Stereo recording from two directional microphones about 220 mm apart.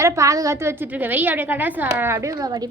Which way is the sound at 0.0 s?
15° right (ahead or behind).